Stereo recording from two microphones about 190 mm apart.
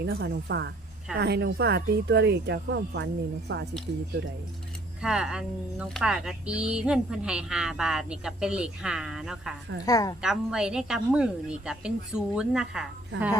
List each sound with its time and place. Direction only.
0.0 s speech: 60° right (ahead or behind)
5.0 s speech: 5° right (ahead or behind)
9.8 s a woman's voice: 20° left (ahead or behind)
10.2 s speech: 5° right (ahead or behind)